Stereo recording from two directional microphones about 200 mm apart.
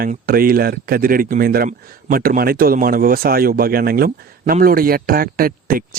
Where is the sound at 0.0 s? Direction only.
45° right (ahead or behind).